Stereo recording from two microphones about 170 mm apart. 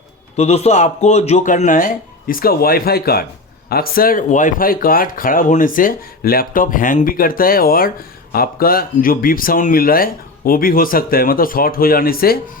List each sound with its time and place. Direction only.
0.3 s speech: 40° left (ahead or behind); by 12.4 s 60° left (ahead or behind)